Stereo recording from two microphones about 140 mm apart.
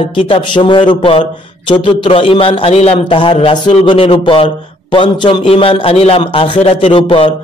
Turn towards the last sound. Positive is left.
turn(degrees=40)  # may be behind; listen again after turning